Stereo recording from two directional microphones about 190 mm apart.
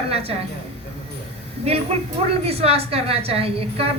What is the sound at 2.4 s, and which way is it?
A man's voice, 30° right (ahead or behind).